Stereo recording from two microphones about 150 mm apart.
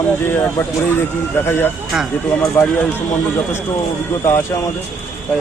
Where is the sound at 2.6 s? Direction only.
15° left (ahead or behind).